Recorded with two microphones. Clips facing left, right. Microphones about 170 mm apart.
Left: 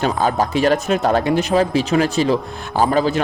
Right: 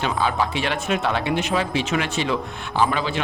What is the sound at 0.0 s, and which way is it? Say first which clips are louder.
Speech: left 4 dB; 45° left (ahead or behind).